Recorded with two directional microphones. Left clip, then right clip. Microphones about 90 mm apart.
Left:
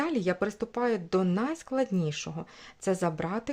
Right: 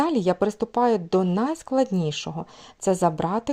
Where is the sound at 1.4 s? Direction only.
40° right (ahead or behind).